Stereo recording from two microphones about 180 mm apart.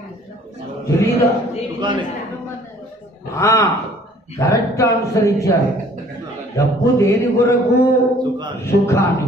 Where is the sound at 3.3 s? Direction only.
15° left (ahead or behind).